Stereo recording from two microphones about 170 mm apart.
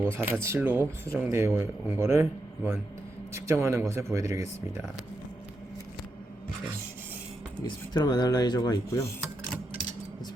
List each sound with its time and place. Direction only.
0.0 s speech: 15° right (ahead or behind)
3.3 s speech: 15° right (ahead or behind)
7.6 s speech: 25° left (ahead or behind)